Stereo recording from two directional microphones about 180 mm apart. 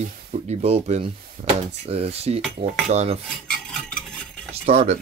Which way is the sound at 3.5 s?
5° left (ahead or behind).